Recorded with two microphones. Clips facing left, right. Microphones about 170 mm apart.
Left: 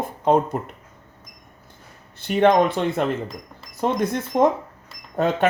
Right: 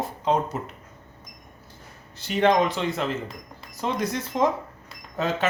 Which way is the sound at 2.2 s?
55° left (ahead or behind).